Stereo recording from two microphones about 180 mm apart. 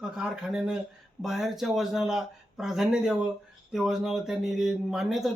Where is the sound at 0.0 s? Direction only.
Centre (ahead or behind).